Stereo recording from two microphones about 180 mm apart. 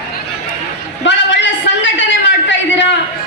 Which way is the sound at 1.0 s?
85° left.